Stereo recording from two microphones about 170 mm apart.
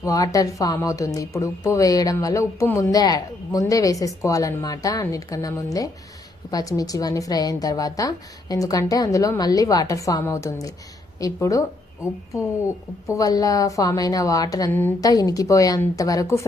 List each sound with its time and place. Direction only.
0.0 s speech: 20° left (ahead or behind)
13.1 s speech: 20° left (ahead or behind)